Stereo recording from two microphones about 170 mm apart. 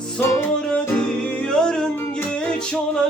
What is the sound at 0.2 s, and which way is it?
Music, 10° left (ahead or behind).